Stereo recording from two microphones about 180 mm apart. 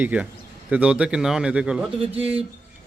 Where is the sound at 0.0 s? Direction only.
10° right (ahead or behind).